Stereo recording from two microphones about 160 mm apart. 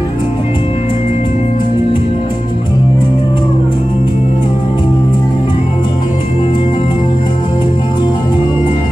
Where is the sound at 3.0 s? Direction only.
30° left (ahead or behind).